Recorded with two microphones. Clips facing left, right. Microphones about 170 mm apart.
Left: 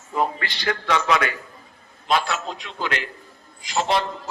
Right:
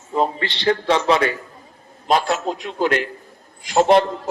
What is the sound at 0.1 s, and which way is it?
A man's voice, 25° right (ahead or behind).